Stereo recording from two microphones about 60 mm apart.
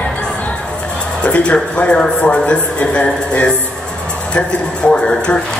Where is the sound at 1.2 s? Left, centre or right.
Left.